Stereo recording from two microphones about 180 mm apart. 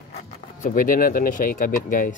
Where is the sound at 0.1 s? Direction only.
45° left (ahead or behind).